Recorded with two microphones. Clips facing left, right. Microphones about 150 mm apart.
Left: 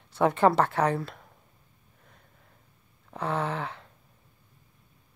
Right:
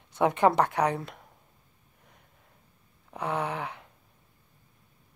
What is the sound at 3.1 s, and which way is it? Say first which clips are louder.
Speech: left 1 dB; 15° right (ahead or behind).